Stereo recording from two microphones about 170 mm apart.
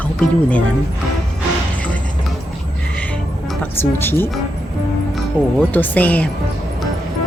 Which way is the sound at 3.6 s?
10° left (ahead or behind).